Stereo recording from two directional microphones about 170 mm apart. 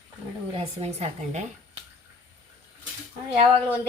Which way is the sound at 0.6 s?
40° right (ahead or behind).